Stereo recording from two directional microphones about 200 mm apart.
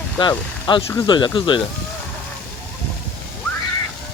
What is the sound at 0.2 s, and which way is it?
Speech, 25° left (ahead or behind).